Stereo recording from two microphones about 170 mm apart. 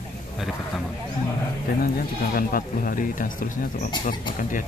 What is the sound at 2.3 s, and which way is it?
Speech, 55° left (ahead or behind).